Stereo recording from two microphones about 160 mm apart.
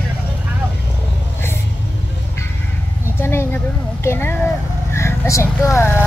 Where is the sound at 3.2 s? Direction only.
15° left (ahead or behind).